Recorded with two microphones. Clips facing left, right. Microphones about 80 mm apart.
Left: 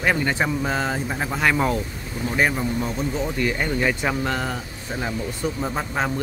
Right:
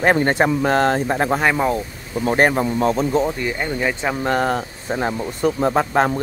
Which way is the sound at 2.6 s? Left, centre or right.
Right.